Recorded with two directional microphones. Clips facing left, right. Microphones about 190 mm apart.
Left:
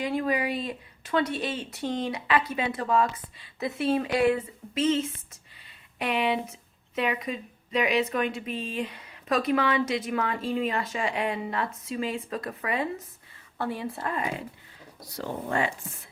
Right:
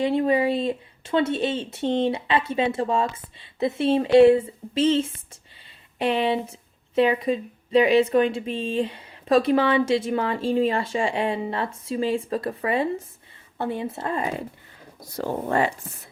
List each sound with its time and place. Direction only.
0.0 s speech: 25° right (ahead or behind)
15.1 s speech: 45° right (ahead or behind)